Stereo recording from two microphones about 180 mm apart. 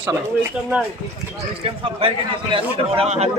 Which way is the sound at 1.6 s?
30° right (ahead or behind).